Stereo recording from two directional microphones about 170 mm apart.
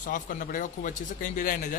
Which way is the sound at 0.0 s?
50° left (ahead or behind).